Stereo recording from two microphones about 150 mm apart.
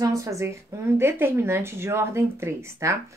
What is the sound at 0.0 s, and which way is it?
A woman's voice, 20° right (ahead or behind).